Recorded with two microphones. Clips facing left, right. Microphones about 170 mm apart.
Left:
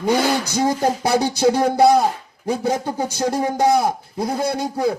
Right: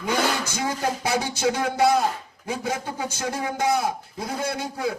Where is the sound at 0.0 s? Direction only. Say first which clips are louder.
Left 6 dB; 35° left (ahead or behind).